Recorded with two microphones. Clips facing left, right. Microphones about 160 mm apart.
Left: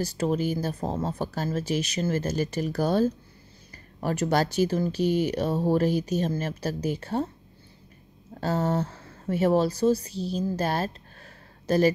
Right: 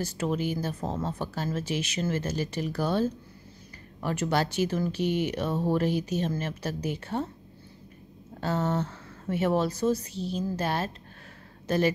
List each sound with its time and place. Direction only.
0.0 s speech: 35° left (ahead or behind)
8.4 s speech: 40° left (ahead or behind)